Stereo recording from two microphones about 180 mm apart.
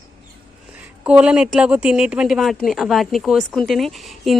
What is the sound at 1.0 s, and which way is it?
Speech, 5° right (ahead or behind).